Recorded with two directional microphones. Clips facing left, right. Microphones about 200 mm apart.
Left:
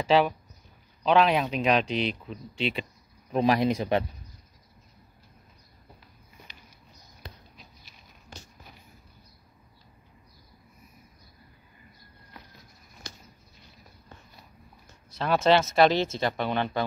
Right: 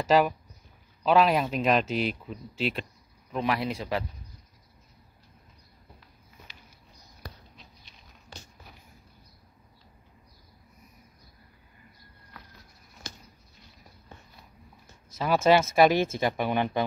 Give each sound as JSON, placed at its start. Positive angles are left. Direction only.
{"t": 0.0, "sound": "speech", "side_deg": -5}
{"t": 3.3, "sound": "speech", "side_deg": 30}
{"t": 15.1, "sound": "speech", "side_deg": -5}